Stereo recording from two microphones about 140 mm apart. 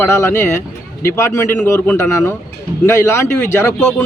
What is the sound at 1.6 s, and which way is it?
Speech, 5° left (ahead or behind).